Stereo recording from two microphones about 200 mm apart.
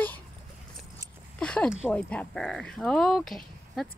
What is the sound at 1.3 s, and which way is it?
Speech, 5° left (ahead or behind).